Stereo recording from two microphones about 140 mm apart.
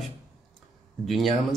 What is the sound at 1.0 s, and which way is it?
Speech, centre (ahead or behind).